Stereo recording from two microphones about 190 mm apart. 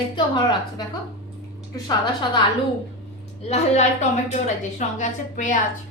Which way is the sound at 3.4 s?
35° left (ahead or behind).